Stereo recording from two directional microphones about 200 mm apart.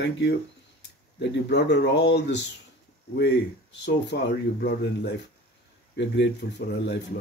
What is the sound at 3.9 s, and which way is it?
Speech, 60° left (ahead or behind).